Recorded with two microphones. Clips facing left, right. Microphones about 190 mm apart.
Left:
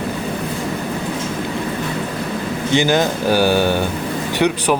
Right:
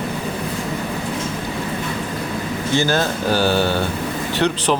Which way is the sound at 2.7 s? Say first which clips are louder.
Left 3 dB; 15° left (ahead or behind).